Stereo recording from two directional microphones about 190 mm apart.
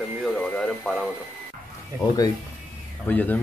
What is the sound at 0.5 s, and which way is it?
Speech, 5° left (ahead or behind).